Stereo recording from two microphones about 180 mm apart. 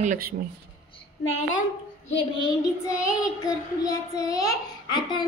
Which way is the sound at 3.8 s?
20° left (ahead or behind).